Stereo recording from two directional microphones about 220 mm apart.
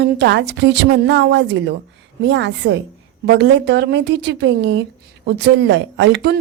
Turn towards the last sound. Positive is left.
turn(degrees=-50)  # may be behind; listen again after turning